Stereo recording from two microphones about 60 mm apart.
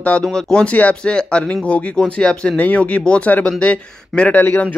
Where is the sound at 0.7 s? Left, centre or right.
Left.